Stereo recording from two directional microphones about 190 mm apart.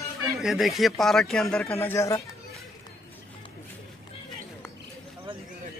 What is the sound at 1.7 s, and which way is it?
Speech, 15° left (ahead or behind).